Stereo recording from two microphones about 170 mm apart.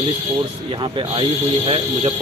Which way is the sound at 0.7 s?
30° right (ahead or behind).